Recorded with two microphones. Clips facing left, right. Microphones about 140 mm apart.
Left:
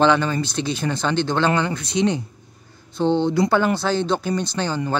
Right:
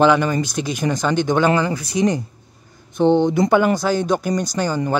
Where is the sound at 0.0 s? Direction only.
10° right (ahead or behind).